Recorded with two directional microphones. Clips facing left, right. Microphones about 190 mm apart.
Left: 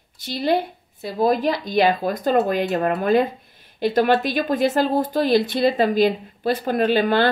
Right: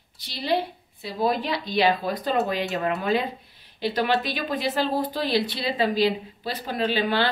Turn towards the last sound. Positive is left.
turn(degrees=50)  # may be behind; listen again after turning